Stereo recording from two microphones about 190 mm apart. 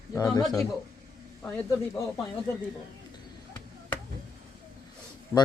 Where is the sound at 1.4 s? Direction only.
5° left (ahead or behind).